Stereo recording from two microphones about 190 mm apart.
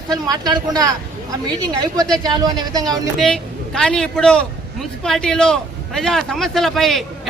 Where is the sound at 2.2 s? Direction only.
20° right (ahead or behind).